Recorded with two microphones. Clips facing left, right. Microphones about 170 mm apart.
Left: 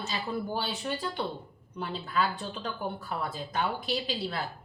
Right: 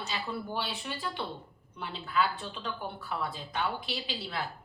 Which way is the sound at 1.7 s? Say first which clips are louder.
Left 1 dB; 40° left (ahead or behind).